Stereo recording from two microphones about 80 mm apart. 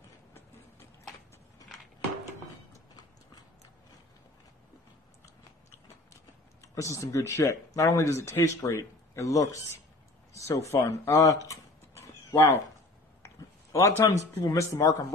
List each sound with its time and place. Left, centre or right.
6.6 s speech: left
13.7 s speech: left